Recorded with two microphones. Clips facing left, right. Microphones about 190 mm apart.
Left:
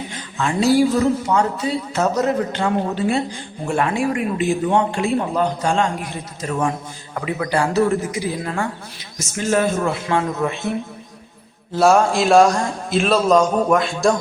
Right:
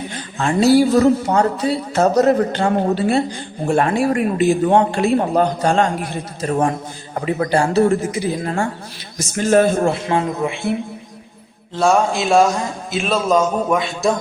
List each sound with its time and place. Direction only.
0.3 s a man's voice: 35° right (ahead or behind); by 5.9 s 50° right (ahead or behind)
6.0 s a man's voice: 35° right (ahead or behind)
8.0 s a man's voice: 25° right (ahead or behind)
10.4 s speech: 15° right (ahead or behind)
11.7 s a man's voice: centre (ahead or behind)